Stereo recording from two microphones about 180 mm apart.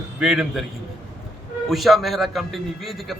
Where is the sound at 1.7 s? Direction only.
Centre (ahead or behind).